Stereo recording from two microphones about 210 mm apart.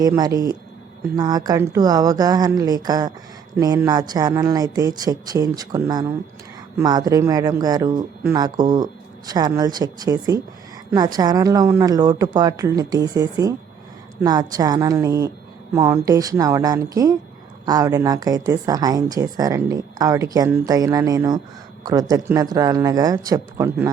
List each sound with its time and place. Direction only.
0.0 s speech: 15° right (ahead or behind)